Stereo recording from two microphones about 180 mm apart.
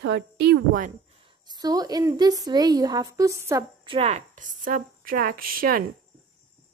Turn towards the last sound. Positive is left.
turn(degrees=-55)  # may be behind; listen again after turning